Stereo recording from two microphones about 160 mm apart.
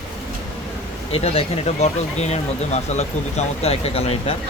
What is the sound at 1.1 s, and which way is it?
Speech, 40° left (ahead or behind).